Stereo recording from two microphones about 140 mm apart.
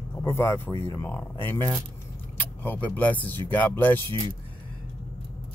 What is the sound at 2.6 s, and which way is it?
Speech, 15° left (ahead or behind).